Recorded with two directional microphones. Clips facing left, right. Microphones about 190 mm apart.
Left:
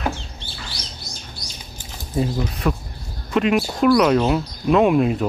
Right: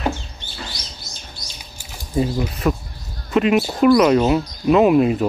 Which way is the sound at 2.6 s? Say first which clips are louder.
Right 2 dB; 10° right (ahead or behind).